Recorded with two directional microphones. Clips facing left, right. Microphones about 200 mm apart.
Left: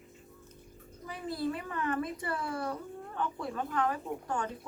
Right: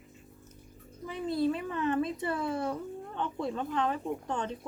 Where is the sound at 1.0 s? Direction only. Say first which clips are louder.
Right 5 dB; 20° right (ahead or behind).